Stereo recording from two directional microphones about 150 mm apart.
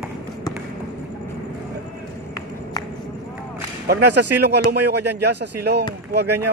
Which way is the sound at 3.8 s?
90° right.